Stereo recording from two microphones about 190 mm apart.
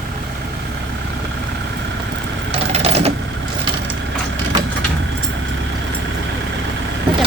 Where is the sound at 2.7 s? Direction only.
35° right (ahead or behind).